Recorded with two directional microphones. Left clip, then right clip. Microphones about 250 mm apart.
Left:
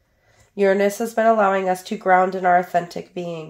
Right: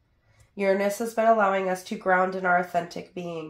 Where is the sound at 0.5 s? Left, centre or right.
Left.